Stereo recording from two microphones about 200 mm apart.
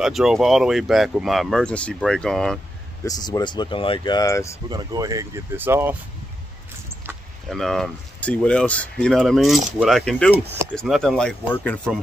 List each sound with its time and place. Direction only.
0.0 s speech: centre (ahead or behind)
3.1 s speech: 20° left (ahead or behind)
4.6 s speech: 20° right (ahead or behind)
7.4 s speech: centre (ahead or behind)